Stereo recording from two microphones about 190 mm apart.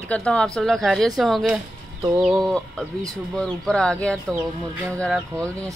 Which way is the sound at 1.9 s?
20° right (ahead or behind).